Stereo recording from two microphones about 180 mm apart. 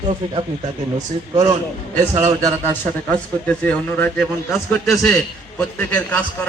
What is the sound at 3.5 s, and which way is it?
A man's voice, 10° left (ahead or behind).